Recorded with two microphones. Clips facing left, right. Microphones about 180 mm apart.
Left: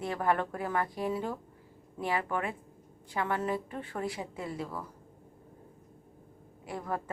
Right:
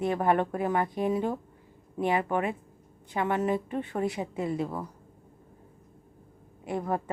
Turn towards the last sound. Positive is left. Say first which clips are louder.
# right 6 dB
turn(degrees=-25)  # may be behind; listen again after turning